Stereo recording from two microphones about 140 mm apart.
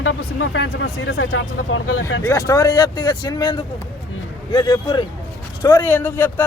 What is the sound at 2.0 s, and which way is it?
A man's voice, 20° left (ahead or behind).